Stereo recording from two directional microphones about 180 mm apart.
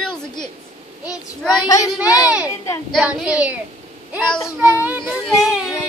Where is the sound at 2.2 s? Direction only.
5° right (ahead or behind).